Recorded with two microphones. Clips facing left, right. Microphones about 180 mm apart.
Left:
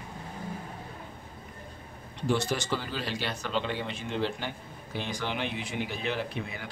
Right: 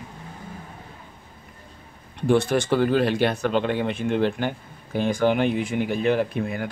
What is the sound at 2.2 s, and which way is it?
Speech, 55° right (ahead or behind).